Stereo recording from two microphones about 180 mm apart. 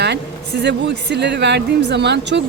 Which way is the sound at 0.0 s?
70° right (ahead or behind).